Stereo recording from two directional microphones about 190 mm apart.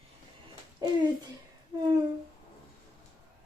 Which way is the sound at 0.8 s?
20° right (ahead or behind).